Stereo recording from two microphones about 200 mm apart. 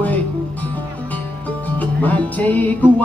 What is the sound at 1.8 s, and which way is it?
Music, 10° left (ahead or behind).